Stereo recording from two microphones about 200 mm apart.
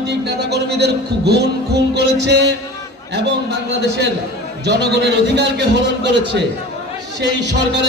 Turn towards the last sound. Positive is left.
turn(degrees=-60)  # may be behind; listen again after turning